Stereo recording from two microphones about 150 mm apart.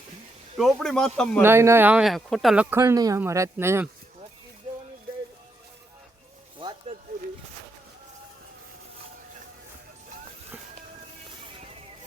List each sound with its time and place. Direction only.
0.6 s speech: 5° left (ahead or behind)
1.4 s speech: 15° right (ahead or behind)
2.6 s speech: 20° right (ahead or behind)
6.6 s snake: 30° right (ahead or behind)